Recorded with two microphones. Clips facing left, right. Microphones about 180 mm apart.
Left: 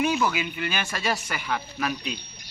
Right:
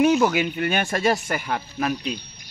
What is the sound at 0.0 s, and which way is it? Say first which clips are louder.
Speech: right 6 dB; 55° right (ahead or behind).